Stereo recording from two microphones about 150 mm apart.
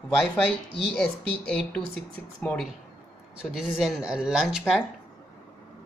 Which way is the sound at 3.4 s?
5° right (ahead or behind).